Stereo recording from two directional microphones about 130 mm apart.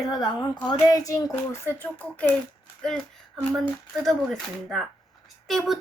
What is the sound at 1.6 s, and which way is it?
Speech, 15° left (ahead or behind).